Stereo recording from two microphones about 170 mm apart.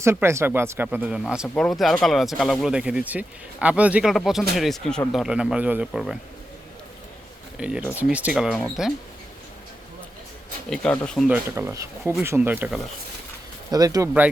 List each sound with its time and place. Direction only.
0.0 s speech: 15° right (ahead or behind)
7.6 s speech: 5° right (ahead or behind)
10.7 s speech: 5° left (ahead or behind)
11.3 s speech: 15° right (ahead or behind)
13.7 s speech: 20° right (ahead or behind)